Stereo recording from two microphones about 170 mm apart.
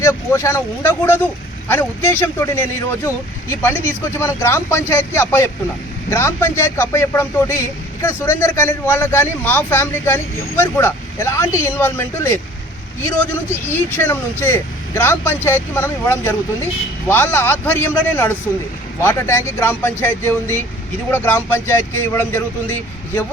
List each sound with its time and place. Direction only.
0.0 s speech: 15° left (ahead or behind)
13.5 s speech: 15° left (ahead or behind)